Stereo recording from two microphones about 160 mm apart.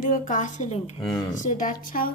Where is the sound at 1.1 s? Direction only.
25° left (ahead or behind).